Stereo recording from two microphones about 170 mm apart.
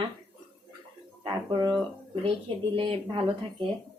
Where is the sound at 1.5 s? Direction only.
25° right (ahead or behind).